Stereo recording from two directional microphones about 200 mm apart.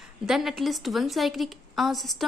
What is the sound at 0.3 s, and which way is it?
A woman's voice, centre (ahead or behind).